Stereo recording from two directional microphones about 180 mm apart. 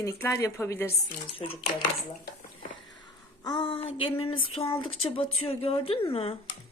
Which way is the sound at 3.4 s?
25° left (ahead or behind).